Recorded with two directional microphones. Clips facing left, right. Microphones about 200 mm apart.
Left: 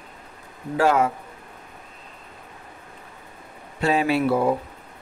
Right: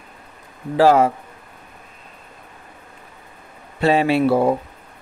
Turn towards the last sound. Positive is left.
turn(degrees=-30)  # may be behind; listen again after turning